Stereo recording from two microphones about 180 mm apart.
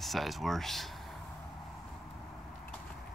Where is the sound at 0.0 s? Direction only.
Centre (ahead or behind).